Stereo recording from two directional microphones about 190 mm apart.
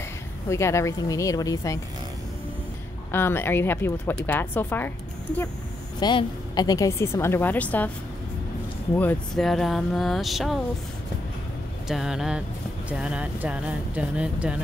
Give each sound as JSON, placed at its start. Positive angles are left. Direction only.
{"t": 0.5, "sound": "a woman's voice", "side_deg": 15}
{"t": 3.1, "sound": "a woman's voice", "side_deg": 10}
{"t": 5.9, "sound": "a woman's voice", "side_deg": 20}
{"t": 8.9, "sound": "speech", "side_deg": 5}
{"t": 11.9, "sound": "speech", "side_deg": 0}